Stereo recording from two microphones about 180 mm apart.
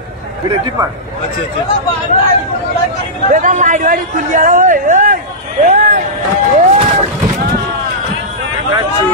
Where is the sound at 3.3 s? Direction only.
45° right (ahead or behind).